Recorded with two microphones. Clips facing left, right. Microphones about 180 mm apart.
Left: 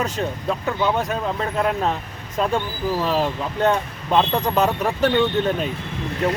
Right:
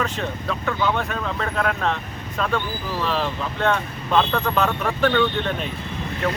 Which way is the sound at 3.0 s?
40° left (ahead or behind).